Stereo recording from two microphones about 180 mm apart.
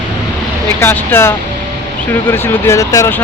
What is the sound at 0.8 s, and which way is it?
Speech, 15° left (ahead or behind).